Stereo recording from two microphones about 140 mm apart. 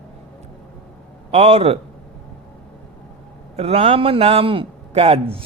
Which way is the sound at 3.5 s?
45° right (ahead or behind).